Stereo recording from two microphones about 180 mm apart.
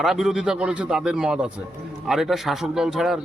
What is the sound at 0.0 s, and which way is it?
A man's voice, centre (ahead or behind).